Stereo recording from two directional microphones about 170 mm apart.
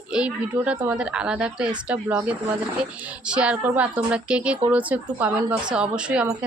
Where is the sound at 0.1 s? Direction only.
5° right (ahead or behind).